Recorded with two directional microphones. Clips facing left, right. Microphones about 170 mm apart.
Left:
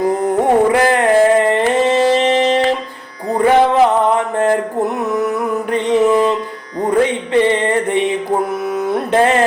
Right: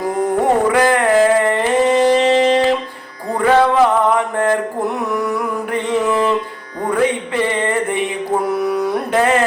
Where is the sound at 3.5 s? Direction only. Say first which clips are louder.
Even; 20° left (ahead or behind).